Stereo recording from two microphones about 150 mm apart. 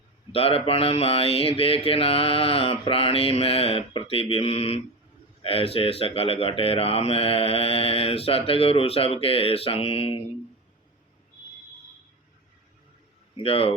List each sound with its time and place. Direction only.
0.3 s speech: 40° left (ahead or behind)
13.4 s speech: 40° left (ahead or behind)